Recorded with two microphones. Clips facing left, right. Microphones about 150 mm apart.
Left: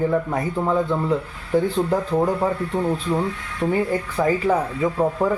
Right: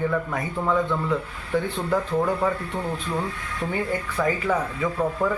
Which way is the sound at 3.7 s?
30° left (ahead or behind).